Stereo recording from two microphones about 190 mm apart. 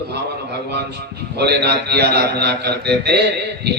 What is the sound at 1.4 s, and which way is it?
A man's voice, 60° right (ahead or behind).